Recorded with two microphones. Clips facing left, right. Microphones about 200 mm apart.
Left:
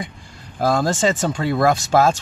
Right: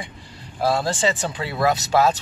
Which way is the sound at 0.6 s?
45° left (ahead or behind).